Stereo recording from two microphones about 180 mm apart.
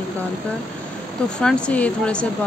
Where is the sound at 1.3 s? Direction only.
5° left (ahead or behind).